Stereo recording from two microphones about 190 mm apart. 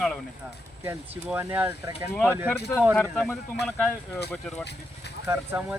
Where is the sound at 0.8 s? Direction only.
10° right (ahead or behind).